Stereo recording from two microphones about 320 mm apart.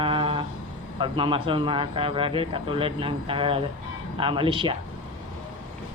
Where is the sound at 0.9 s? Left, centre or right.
Centre.